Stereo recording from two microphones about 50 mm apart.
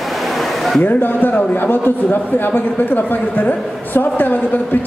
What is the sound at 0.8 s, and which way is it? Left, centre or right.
A man's voice, left.